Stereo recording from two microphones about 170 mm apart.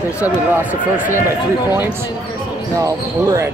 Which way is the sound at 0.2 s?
10° right (ahead or behind).